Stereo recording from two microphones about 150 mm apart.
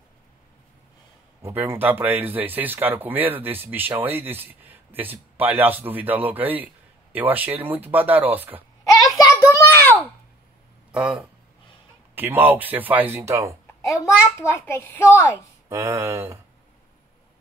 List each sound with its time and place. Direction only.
1.4 s speech: 15° right (ahead or behind)
9.2 s a sound: 20° left (ahead or behind)
10.9 s speech: 10° right (ahead or behind)
13.8 s a child's voice: 20° left (ahead or behind)
15.7 s speech: 15° right (ahead or behind)